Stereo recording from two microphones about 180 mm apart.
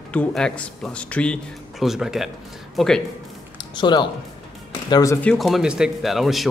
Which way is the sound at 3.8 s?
25° left (ahead or behind).